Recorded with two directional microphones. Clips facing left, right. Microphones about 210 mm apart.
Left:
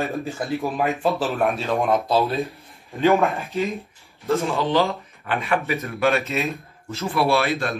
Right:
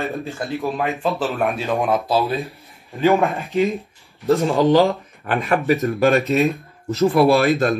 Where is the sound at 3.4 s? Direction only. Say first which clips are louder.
Right 5 dB; centre (ahead or behind).